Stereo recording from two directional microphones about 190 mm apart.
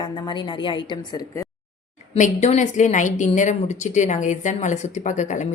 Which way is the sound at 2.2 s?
40° left (ahead or behind).